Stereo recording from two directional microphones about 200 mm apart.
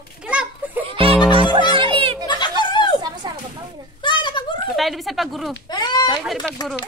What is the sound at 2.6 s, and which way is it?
Chatter, 20° left (ahead or behind).